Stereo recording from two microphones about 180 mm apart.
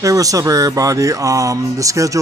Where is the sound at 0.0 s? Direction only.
20° right (ahead or behind).